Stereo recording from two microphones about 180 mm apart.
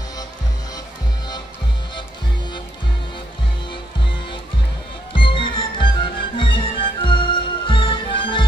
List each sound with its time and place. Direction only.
5.1 s music: 30° left (ahead or behind)